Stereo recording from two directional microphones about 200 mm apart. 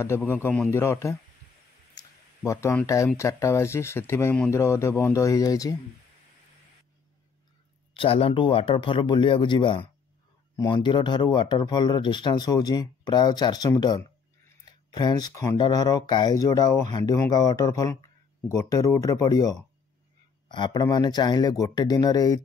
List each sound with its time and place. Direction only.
0.0 s speech: 10° left (ahead or behind)
2.0 s a sound: 15° left (ahead or behind)
3.2 s speech: 15° left (ahead or behind)
8.0 s speech: 30° left (ahead or behind)